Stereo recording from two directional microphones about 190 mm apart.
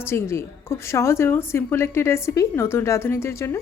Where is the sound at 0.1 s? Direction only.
15° left (ahead or behind).